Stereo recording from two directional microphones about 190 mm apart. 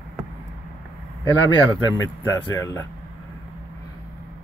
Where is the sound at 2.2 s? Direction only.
15° left (ahead or behind).